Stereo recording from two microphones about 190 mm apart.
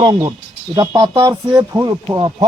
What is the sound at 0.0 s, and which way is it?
Speech, 20° right (ahead or behind).